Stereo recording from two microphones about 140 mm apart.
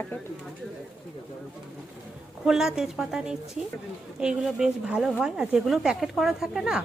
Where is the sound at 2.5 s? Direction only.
5° right (ahead or behind).